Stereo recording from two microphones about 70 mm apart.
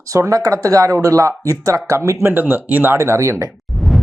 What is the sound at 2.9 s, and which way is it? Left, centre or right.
Speech, right.